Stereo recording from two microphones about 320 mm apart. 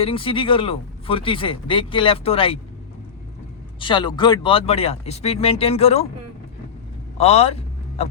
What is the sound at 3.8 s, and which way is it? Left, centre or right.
Speech, centre.